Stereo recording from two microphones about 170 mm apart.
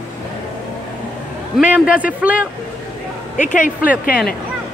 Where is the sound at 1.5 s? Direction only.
5° right (ahead or behind).